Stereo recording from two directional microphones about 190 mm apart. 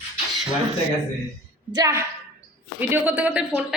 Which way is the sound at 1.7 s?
20° right (ahead or behind).